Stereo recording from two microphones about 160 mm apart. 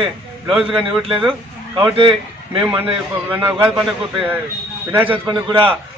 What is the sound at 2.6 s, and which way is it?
A man's voice, 10° right (ahead or behind).